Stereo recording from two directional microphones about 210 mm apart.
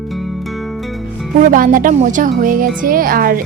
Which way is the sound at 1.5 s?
40° right (ahead or behind).